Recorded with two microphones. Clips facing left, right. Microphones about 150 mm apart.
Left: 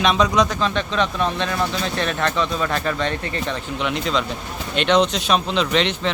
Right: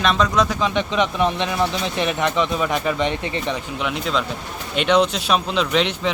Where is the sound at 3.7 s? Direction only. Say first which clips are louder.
Left 3 dB; 5° right (ahead or behind).